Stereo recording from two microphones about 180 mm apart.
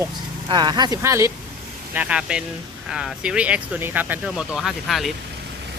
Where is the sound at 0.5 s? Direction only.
25° right (ahead or behind).